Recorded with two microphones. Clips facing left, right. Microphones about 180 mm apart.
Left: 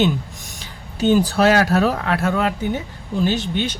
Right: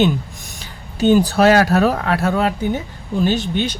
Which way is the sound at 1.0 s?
60° right (ahead or behind).